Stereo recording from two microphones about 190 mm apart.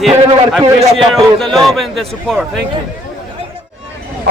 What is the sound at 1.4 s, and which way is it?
Speech, centre (ahead or behind).